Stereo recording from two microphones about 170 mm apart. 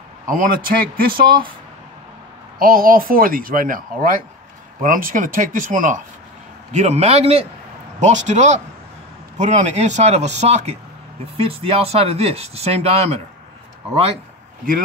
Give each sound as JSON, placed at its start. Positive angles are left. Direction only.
{"t": 0.3, "sound": "speech", "side_deg": -55}
{"t": 2.6, "sound": "speech", "side_deg": -55}